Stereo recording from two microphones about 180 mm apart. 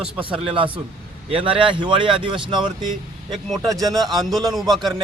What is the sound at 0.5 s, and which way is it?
Speech, 30° right (ahead or behind).